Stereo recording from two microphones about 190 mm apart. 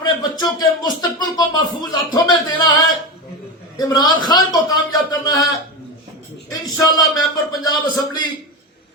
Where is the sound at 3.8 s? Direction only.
20° left (ahead or behind).